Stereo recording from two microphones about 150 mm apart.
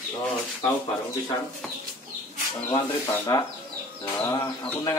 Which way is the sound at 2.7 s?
25° left (ahead or behind).